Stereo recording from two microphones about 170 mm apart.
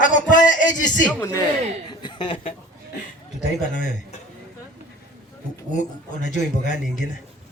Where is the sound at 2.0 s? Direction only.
30° left (ahead or behind).